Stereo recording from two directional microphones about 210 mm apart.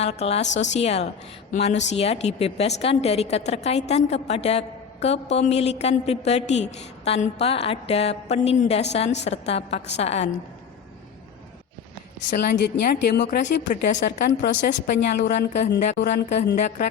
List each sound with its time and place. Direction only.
0.0 s a woman's voice: 30° left (ahead or behind)
12.3 s a woman's voice: 50° left (ahead or behind)
13.2 s a woman's voice: 40° left (ahead or behind)
14.2 s a woman's voice: 50° left (ahead or behind)
15.3 s a woman's voice: 35° left (ahead or behind)